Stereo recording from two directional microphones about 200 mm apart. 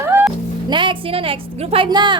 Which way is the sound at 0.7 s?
25° right (ahead or behind).